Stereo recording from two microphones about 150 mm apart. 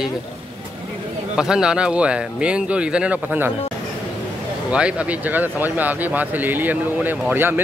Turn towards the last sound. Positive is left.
turn(degrees=-15)  # may be behind; listen again after turning